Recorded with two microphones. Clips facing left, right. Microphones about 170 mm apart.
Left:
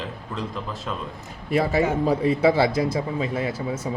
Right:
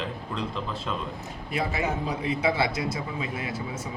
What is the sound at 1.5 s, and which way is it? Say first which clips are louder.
A man's voice: left 7 dB; 40° left (ahead or behind).